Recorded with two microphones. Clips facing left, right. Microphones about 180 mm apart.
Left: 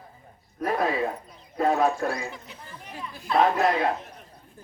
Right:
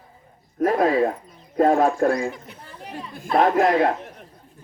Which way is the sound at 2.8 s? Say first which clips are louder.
Right 5 dB; 35° right (ahead or behind).